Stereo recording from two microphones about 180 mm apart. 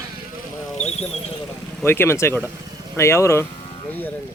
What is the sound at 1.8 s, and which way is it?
Speech, 15° left (ahead or behind).